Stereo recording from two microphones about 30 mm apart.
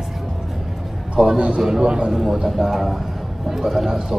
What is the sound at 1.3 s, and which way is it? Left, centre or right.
Speech, right.